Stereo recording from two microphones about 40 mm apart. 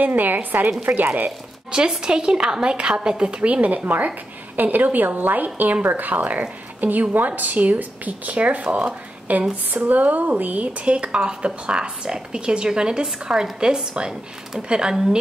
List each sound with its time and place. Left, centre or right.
0.0 s a woman's voice: right
1.7 s a woman's voice: centre